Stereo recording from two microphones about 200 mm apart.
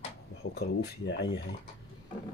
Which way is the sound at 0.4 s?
55° left (ahead or behind).